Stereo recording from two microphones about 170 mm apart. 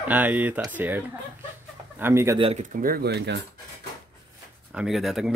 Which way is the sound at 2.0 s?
15° right (ahead or behind).